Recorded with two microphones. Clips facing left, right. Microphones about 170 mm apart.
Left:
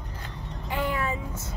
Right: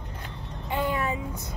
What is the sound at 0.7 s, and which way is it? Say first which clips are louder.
Speech: right 1 dB; 20° right (ahead or behind).